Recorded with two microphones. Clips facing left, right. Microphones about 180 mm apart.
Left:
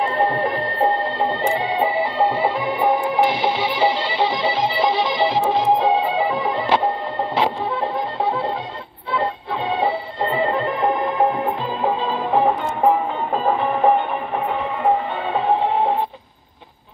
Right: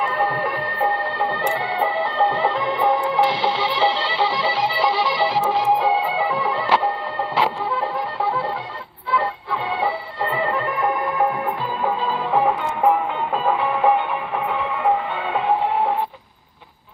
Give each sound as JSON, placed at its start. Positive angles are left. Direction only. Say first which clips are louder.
{"t": 0.0, "sound": "music", "louder": "left 3 dB", "side_deg": 25}
{"t": 13.3, "sound": "music", "louder": "left 2 dB", "side_deg": 40}